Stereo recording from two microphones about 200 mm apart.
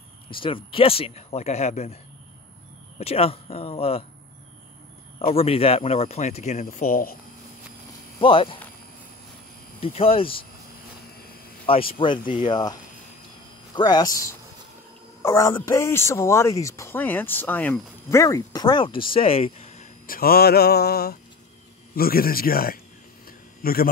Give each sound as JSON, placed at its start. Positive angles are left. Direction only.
{"t": 0.3, "sound": "speech", "side_deg": 25}
{"t": 3.0, "sound": "speech", "side_deg": 30}
{"t": 5.2, "sound": "speech", "side_deg": 30}
{"t": 8.2, "sound": "speech", "side_deg": 25}
{"t": 9.8, "sound": "speech", "side_deg": 30}
{"t": 11.1, "sound": "a sound", "side_deg": 50}
{"t": 11.6, "sound": "speech", "side_deg": 25}
{"t": 13.7, "sound": "speech", "side_deg": 20}
{"t": 23.2, "sound": "a sound", "side_deg": 50}